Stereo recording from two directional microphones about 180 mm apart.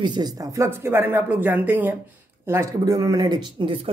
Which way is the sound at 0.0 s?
25° right (ahead or behind).